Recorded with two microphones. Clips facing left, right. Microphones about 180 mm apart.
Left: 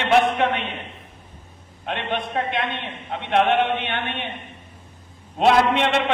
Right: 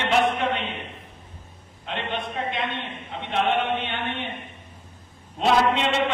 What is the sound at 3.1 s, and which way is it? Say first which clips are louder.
Speech: left 5 dB; 65° left (ahead or behind).